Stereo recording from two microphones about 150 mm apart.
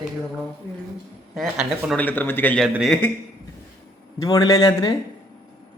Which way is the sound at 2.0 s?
10° left (ahead or behind).